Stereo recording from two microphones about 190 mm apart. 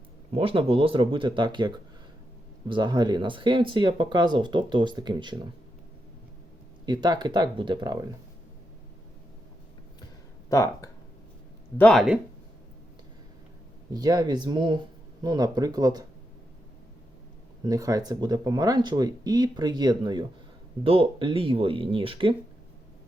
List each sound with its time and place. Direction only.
0.3 s speech: 30° right (ahead or behind)
6.8 s speech: 20° right (ahead or behind)
10.5 s speech: 15° left (ahead or behind)
11.8 s speech: 5° left (ahead or behind)
13.9 s speech: 20° right (ahead or behind)
17.6 s speech: 20° right (ahead or behind)